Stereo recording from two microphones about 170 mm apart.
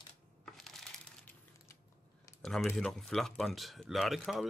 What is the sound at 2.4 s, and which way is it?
Speech, 5° left (ahead or behind).